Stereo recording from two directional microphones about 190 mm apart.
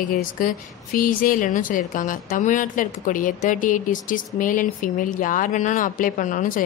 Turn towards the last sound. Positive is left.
turn(degrees=45)  # may be behind; listen again after turning